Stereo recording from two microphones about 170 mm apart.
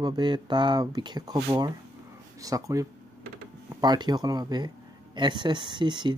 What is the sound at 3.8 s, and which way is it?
Speech, 25° right (ahead or behind).